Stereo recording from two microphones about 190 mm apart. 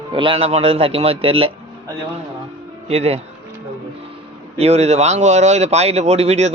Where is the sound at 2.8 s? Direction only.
35° right (ahead or behind).